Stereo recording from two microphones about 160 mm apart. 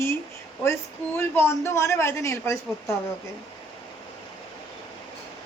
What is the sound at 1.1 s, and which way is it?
A man's voice, 15° left (ahead or behind).